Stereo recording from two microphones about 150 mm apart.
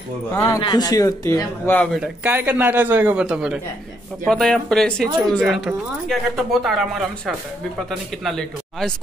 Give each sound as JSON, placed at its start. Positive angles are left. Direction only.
{"t": 0.3, "sound": "speech", "side_deg": 20}
{"t": 2.0, "sound": "a man's voice", "side_deg": -10}